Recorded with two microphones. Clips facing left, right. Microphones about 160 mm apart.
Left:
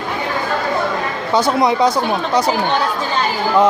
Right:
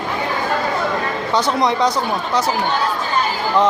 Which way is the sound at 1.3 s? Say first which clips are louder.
Left 3 dB; 10° left (ahead or behind).